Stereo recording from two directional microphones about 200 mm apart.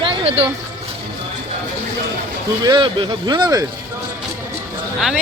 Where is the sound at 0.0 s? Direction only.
30° right (ahead or behind).